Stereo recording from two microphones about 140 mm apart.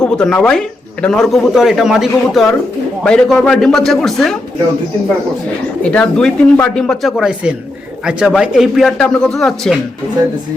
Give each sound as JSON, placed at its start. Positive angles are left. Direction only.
{"t": 0.0, "sound": "speech", "side_deg": 5}
{"t": 5.8, "sound": "speech", "side_deg": 10}